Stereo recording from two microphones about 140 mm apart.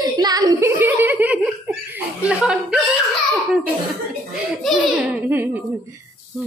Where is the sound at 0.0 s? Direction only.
25° right (ahead or behind).